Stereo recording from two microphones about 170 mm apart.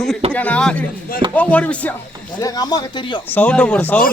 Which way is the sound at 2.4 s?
20° left (ahead or behind).